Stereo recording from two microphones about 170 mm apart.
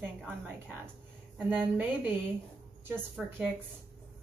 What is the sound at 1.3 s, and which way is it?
Speech, 10° right (ahead or behind).